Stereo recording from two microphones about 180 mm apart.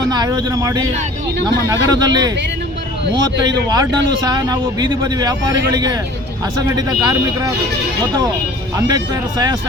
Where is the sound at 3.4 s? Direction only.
20° right (ahead or behind).